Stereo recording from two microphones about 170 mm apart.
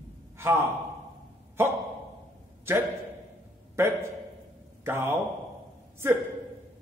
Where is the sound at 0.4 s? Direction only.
15° right (ahead or behind).